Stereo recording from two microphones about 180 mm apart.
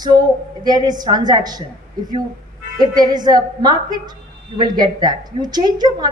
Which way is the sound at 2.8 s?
25° right (ahead or behind).